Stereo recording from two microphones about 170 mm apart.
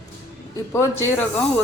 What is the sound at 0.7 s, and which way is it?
Speech, 15° left (ahead or behind).